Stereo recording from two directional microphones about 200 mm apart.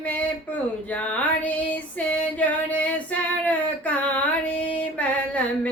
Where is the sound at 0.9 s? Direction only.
5° left (ahead or behind).